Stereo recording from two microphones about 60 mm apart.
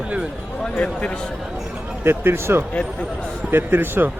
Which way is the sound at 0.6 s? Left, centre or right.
Left.